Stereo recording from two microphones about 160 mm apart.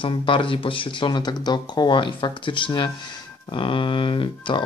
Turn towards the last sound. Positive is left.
turn(degrees=30)  # may be behind; listen again after turning